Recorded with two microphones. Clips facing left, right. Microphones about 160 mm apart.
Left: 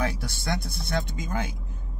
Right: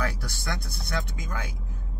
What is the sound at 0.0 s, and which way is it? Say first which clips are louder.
A man's voice: left 2 dB; 25° left (ahead or behind).